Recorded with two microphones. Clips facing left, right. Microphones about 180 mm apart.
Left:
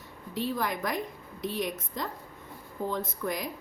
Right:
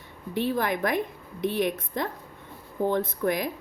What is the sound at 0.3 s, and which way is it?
Speech, 60° right (ahead or behind).